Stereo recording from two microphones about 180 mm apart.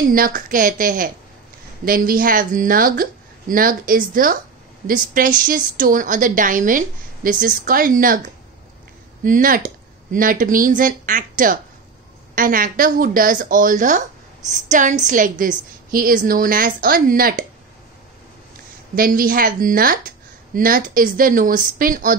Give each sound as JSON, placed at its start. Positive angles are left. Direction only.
{"t": 0.1, "sound": "a woman's voice", "side_deg": -50}
{"t": 9.2, "sound": "a woman's voice", "side_deg": -50}
{"t": 18.9, "sound": "a woman's voice", "side_deg": -55}